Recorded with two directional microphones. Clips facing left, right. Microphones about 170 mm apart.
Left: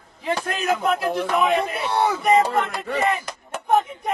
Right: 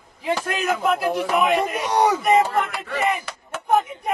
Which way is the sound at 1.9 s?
15° right (ahead or behind).